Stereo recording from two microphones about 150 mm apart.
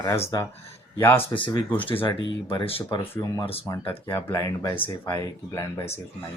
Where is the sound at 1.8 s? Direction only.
35° left (ahead or behind).